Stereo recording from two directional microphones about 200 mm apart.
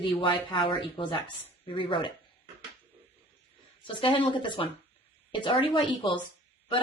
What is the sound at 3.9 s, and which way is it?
A woman's voice, 25° left (ahead or behind).